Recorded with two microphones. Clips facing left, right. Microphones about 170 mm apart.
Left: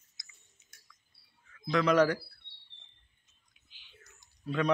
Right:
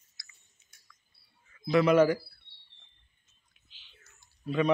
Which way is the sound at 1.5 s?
10° right (ahead or behind).